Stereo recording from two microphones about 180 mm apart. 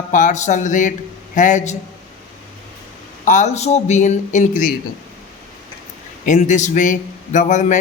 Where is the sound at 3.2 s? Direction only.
40° left (ahead or behind).